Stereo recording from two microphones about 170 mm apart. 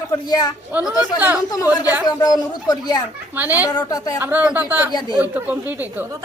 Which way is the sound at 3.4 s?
10° right (ahead or behind).